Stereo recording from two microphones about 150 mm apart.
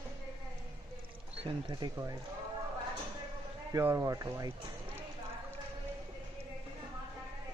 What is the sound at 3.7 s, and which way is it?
Speech, 20° right (ahead or behind).